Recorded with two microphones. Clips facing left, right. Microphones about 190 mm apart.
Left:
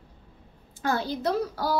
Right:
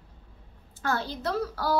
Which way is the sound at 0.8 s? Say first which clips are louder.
Left 3 dB; 15° left (ahead or behind).